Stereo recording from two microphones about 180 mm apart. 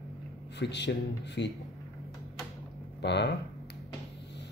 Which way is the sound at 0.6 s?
70° left (ahead or behind).